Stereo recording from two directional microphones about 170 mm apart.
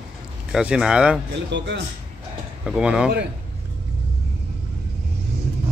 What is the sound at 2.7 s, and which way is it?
Speech, 5° right (ahead or behind).